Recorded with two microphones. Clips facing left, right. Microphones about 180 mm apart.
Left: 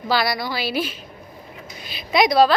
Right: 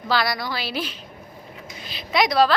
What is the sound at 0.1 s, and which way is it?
A woman's voice, 10° left (ahead or behind).